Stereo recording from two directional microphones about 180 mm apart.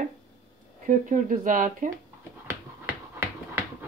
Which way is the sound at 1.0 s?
45° right (ahead or behind).